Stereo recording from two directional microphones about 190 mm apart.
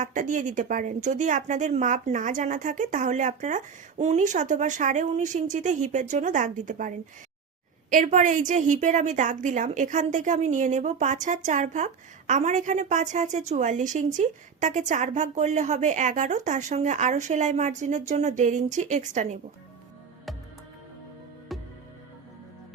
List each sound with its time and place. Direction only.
0.0 s a woman's voice: 40° right (ahead or behind)
21.5 s music: centre (ahead or behind)